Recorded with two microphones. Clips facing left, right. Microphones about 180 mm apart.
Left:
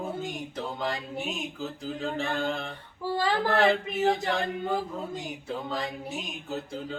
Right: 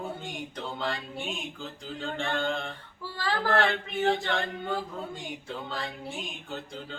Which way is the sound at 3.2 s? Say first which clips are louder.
Left 3 dB; 15° left (ahead or behind).